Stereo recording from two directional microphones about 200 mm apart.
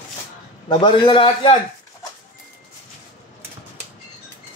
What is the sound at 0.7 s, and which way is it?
Speech, 25° left (ahead or behind).